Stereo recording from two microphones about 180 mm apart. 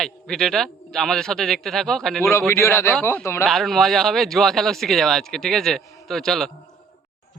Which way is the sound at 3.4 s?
Centre (ahead or behind).